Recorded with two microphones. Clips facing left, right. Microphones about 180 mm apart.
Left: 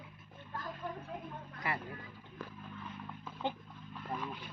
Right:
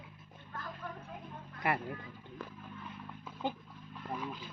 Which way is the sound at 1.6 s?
55° right (ahead or behind).